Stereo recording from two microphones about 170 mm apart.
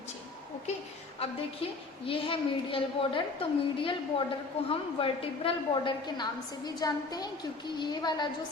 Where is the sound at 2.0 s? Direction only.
30° left (ahead or behind).